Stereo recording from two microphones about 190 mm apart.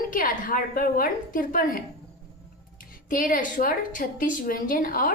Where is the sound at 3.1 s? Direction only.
45° left (ahead or behind).